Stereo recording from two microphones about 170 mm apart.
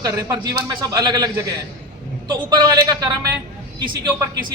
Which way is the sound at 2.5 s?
25° right (ahead or behind).